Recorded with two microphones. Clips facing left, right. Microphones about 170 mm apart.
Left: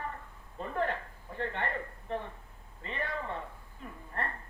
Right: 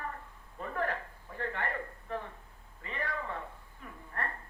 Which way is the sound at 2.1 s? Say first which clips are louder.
Left 2 dB; 25° left (ahead or behind).